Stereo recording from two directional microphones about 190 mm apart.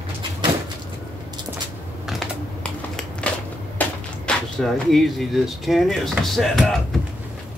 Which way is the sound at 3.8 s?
5° left (ahead or behind).